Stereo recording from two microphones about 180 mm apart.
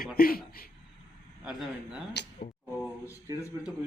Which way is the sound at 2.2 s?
70° left (ahead or behind).